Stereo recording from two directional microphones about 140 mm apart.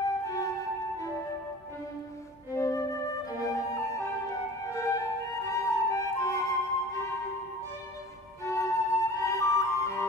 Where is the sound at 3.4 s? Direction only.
25° left (ahead or behind).